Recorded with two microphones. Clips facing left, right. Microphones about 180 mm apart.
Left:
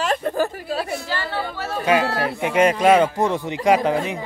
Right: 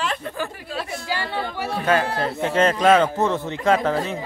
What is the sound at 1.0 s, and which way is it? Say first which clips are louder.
Speech: even; 15° right (ahead or behind).